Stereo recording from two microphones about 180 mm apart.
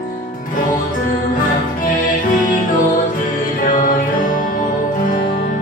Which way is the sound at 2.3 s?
45° left (ahead or behind).